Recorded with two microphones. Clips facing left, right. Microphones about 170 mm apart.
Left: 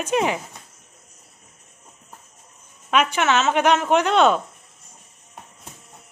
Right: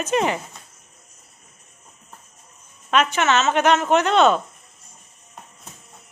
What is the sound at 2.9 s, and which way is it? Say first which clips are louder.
Speech: even; 10° left (ahead or behind).